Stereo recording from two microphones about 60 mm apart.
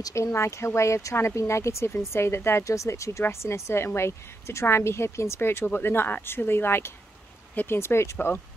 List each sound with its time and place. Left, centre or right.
0.1 s speech: left
2.6 s speech: left